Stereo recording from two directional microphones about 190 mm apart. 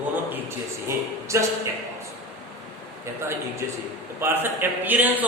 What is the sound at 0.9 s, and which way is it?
Speech, 15° right (ahead or behind).